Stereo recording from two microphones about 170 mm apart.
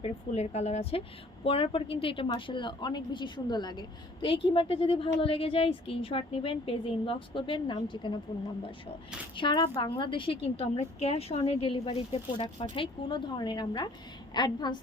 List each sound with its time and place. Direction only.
0.0 s a woman's voice: 40° left (ahead or behind)
9.3 s a woman's voice: 30° left (ahead or behind)